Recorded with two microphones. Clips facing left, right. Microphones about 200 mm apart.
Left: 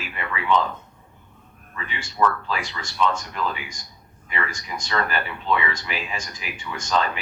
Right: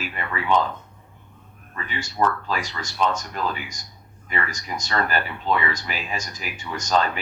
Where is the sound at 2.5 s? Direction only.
40° right (ahead or behind).